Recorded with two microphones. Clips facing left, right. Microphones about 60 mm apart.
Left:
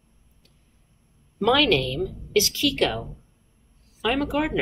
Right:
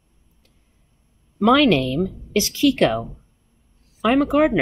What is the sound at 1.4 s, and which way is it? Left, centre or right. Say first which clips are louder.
A woman's voice: right 5 dB; centre.